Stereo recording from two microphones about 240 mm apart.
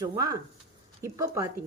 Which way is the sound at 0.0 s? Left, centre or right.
Centre.